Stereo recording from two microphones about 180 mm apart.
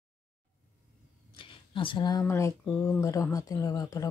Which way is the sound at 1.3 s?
30° left (ahead or behind).